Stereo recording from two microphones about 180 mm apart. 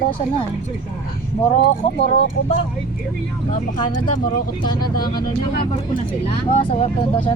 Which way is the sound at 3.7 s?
25° left (ahead or behind).